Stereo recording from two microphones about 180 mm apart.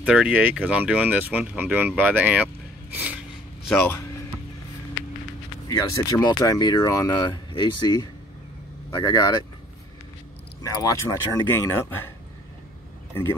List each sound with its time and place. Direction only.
0.0 s speech: 5° right (ahead or behind)
2.9 s a sound: 10° right (ahead or behind)
5.7 s speech: 20° left (ahead or behind)
10.6 s speech: 20° left (ahead or behind)